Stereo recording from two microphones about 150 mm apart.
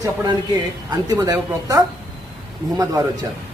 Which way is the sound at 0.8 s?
25° right (ahead or behind).